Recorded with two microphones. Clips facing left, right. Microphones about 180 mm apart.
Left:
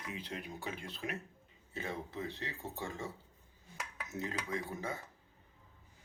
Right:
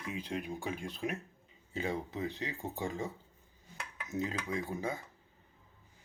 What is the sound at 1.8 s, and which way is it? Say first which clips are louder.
Speech: right 5 dB; 15° right (ahead or behind).